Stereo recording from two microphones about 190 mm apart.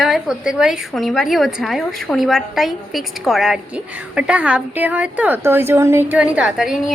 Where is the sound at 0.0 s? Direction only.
Centre (ahead or behind).